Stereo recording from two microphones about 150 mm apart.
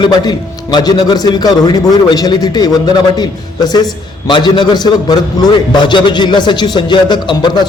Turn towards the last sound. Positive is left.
turn(degrees=30)  # may be behind; listen again after turning